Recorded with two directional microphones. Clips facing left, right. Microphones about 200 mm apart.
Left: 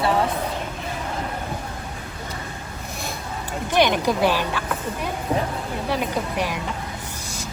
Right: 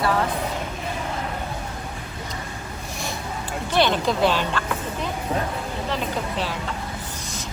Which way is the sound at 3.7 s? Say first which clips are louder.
Left 1 dB; 15° left (ahead or behind).